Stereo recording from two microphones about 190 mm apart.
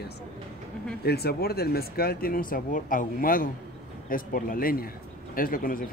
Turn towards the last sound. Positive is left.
turn(degrees=45)  # may be behind; listen again after turning